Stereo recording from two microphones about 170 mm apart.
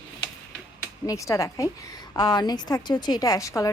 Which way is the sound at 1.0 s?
20° left (ahead or behind).